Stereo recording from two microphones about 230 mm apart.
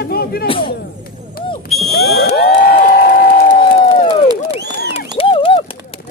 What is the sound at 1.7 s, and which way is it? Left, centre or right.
Smoke detector, centre.